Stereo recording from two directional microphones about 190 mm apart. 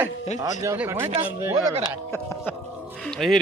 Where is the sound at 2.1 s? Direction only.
10° left (ahead or behind).